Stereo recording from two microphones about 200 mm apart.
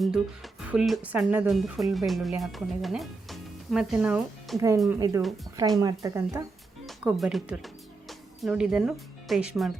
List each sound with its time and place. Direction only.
0.0 s speech: centre (ahead or behind)
4.5 s speech: 15° right (ahead or behind)
6.8 s speech: centre (ahead or behind)